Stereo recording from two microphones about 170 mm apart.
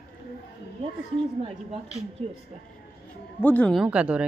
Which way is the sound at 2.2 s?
40° right (ahead or behind).